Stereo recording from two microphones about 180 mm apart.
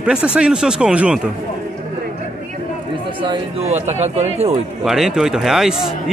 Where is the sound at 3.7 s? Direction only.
40° right (ahead or behind).